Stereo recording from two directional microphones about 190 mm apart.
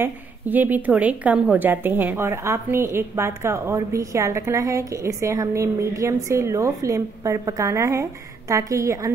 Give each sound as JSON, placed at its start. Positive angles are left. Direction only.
{"t": 0.0, "sound": "a woman's voice", "side_deg": -10}